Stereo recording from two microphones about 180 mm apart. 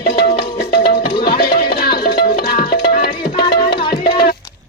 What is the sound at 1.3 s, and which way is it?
Music, 55° left (ahead or behind).